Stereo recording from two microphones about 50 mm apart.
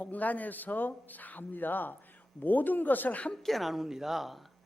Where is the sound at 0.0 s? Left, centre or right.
Left.